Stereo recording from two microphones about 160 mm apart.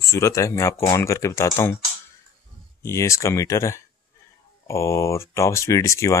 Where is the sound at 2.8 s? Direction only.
20° left (ahead or behind).